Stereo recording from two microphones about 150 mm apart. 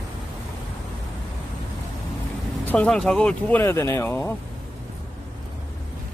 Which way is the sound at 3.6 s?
15° left (ahead or behind).